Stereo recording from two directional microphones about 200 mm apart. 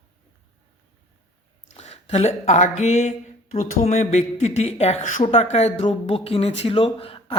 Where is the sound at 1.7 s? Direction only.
30° left (ahead or behind).